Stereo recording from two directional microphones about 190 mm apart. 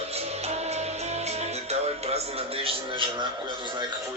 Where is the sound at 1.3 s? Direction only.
35° right (ahead or behind).